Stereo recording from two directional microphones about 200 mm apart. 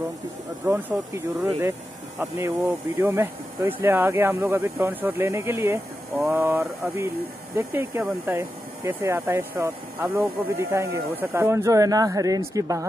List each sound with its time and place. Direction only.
0.7 s speech: 10° right (ahead or behind)